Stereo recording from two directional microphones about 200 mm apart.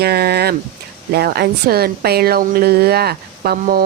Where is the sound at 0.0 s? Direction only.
50° right (ahead or behind).